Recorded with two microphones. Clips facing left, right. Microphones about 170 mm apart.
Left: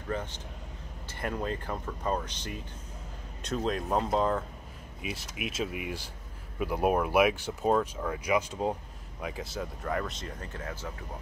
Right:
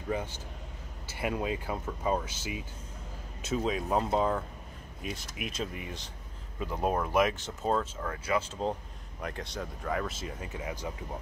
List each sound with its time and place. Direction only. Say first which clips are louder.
0.1 s speech: right 1 dB; 10° right (ahead or behind)